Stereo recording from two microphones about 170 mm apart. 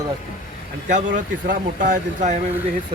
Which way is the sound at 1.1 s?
50° right (ahead or behind).